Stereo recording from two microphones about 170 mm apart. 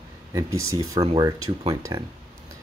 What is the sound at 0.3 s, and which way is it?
Speech, 20° right (ahead or behind).